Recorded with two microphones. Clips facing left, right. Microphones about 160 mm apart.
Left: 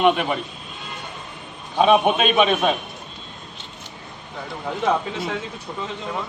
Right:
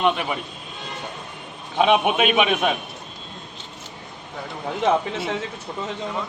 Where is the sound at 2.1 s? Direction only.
15° right (ahead or behind).